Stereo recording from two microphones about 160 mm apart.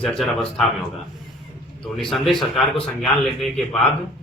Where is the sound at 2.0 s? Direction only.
Centre (ahead or behind).